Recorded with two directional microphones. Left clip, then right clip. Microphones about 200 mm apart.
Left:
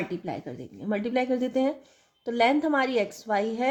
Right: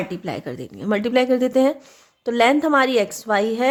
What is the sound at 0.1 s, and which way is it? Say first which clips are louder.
A woman's voice: right 6 dB; 35° right (ahead or behind).